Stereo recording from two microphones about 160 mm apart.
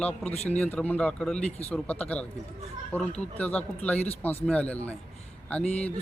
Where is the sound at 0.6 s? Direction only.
10° left (ahead or behind).